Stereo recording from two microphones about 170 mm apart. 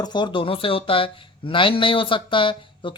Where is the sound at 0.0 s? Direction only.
25° left (ahead or behind).